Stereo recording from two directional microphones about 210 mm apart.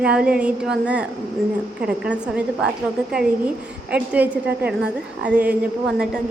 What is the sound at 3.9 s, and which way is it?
A woman's voice, 5° right (ahead or behind).